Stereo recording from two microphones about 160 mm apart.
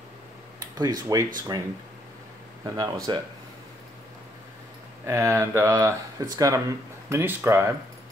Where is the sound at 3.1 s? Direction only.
25° right (ahead or behind).